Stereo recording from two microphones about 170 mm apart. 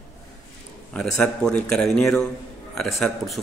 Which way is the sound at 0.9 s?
5° left (ahead or behind).